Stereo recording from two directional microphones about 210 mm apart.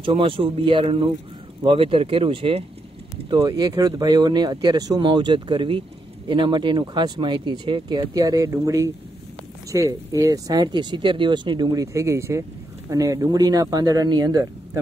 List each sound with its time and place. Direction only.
0.0 s speech: 25° right (ahead or behind)